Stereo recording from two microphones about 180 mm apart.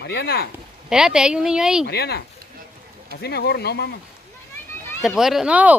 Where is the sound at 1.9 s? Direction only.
60° left (ahead or behind).